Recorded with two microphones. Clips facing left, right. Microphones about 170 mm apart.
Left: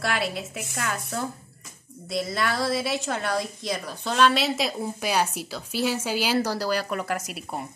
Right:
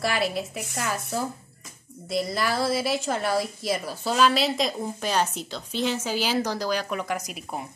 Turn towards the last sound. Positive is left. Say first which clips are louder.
# even
turn(degrees=5)  # may be behind; listen again after turning